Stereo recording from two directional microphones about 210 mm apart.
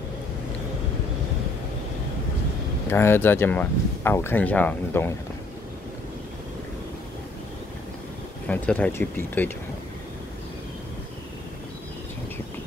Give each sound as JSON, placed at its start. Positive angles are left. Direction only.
{"t": 2.9, "sound": "speech", "side_deg": 10}
{"t": 8.5, "sound": "speech", "side_deg": 10}